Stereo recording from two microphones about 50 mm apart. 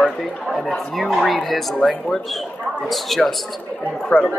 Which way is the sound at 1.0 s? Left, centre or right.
Centre.